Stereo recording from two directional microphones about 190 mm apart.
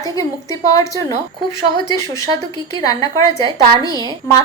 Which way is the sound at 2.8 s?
20° left (ahead or behind).